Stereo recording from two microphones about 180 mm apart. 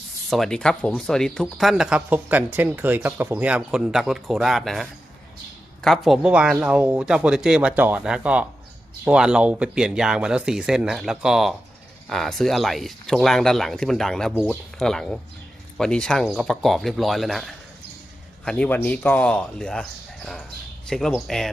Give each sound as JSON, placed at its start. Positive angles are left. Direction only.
{"t": 0.3, "sound": "speech", "side_deg": 0}